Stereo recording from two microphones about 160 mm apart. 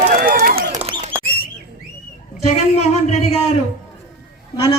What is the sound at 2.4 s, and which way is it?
Speech, 40° left (ahead or behind).